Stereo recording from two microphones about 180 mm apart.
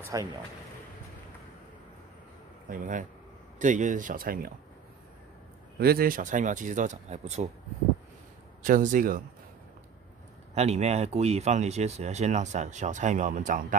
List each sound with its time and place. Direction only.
0.0 s speech: 20° right (ahead or behind)
2.7 s speech: 45° right (ahead or behind)
5.8 s speech: 60° right (ahead or behind); by 7.4 s 40° right (ahead or behind)
8.6 s speech: 45° right (ahead or behind)
10.5 s speech: 35° right (ahead or behind)